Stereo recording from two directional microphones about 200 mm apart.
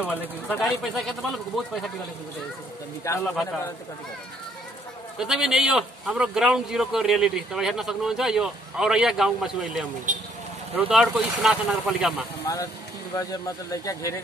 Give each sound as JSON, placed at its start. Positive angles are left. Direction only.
{"t": 0.0, "sound": "a man's voice", "side_deg": 10}
{"t": 3.1, "sound": "speech", "side_deg": 15}
{"t": 5.2, "sound": "a man's voice", "side_deg": 0}
{"t": 10.1, "sound": "speech", "side_deg": -40}
{"t": 10.8, "sound": "a man's voice", "side_deg": -5}
{"t": 13.1, "sound": "speech", "side_deg": 15}